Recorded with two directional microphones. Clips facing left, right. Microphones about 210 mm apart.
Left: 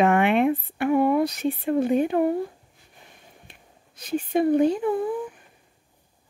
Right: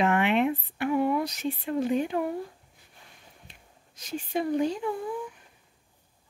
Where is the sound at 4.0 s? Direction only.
55° left (ahead or behind).